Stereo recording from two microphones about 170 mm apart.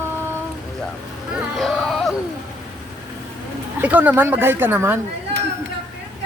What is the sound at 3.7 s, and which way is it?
Speech, 10° right (ahead or behind).